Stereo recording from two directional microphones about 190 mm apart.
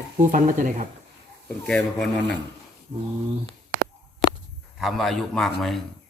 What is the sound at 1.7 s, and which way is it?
Speech, 5° left (ahead or behind).